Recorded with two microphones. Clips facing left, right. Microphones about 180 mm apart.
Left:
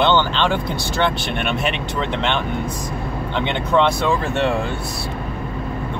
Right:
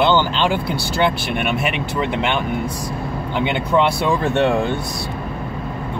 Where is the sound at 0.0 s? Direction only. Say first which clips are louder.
Right 1 dB; 10° right (ahead or behind).